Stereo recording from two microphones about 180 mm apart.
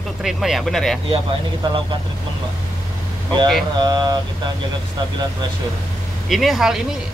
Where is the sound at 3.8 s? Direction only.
20° right (ahead or behind).